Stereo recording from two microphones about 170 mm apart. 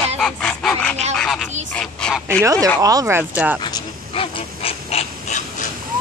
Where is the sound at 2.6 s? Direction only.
20° right (ahead or behind).